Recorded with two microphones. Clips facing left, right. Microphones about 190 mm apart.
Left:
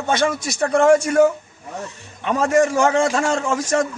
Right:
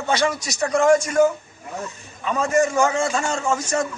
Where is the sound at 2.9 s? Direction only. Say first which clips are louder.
Left 4 dB; 90° left.